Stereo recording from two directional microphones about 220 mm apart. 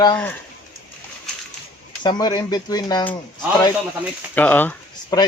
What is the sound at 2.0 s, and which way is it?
Speech, 20° left (ahead or behind).